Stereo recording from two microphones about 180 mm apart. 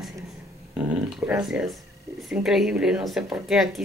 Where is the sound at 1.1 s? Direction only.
5° right (ahead or behind).